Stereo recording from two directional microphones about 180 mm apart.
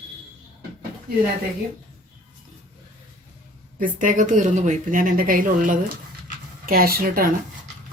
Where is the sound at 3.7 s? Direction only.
45° right (ahead or behind).